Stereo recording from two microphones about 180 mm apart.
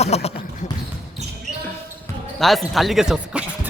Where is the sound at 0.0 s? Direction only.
35° left (ahead or behind).